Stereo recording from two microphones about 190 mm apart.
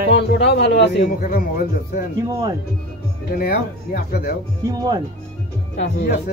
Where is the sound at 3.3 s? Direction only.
50° left (ahead or behind).